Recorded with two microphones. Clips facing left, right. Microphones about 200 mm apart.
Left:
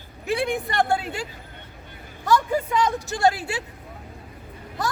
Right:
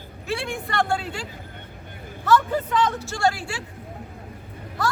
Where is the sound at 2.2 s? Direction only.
10° left (ahead or behind).